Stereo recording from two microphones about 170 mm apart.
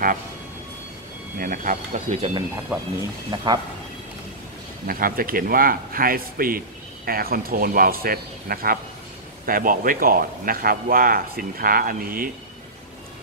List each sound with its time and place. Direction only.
1.4 s speech: 55° right (ahead or behind)
2.7 s speech: 15° right (ahead or behind)
3.3 s speech: 25° right (ahead or behind)
4.8 s speech: 60° right (ahead or behind)